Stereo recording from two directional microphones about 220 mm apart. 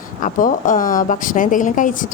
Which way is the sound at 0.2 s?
35° left (ahead or behind).